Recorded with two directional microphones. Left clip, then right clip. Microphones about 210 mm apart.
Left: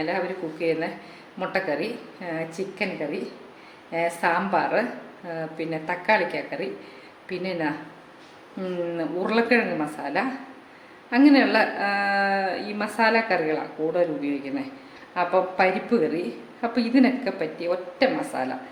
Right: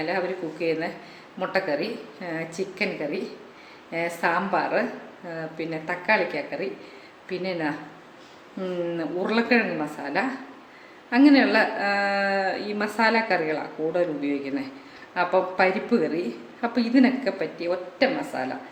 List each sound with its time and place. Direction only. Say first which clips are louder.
0.0 s a woman's voice: even; centre (ahead or behind)